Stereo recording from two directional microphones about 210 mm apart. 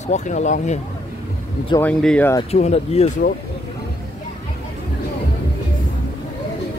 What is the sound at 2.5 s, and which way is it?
Speech, 30° left (ahead or behind).